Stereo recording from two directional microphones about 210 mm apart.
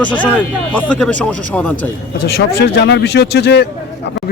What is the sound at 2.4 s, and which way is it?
Speech, 55° left (ahead or behind).